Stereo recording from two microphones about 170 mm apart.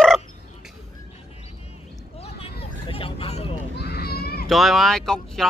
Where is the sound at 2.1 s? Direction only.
35° left (ahead or behind).